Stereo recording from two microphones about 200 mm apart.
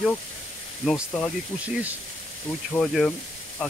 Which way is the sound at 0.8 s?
Centre (ahead or behind).